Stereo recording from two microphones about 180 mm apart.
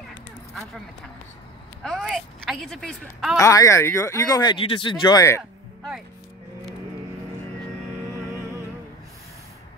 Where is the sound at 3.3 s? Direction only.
15° left (ahead or behind).